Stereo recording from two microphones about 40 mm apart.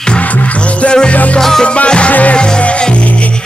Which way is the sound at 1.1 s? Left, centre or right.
Left.